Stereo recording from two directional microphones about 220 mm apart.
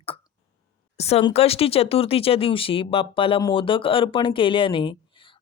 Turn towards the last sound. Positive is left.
turn(degrees=25)  # may be behind; listen again after turning